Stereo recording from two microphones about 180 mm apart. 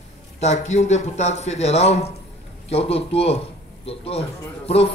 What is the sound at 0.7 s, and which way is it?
A man's voice, 40° left (ahead or behind).